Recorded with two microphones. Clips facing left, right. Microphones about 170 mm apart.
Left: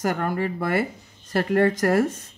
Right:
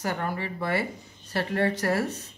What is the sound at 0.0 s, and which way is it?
Speech, 50° left (ahead or behind).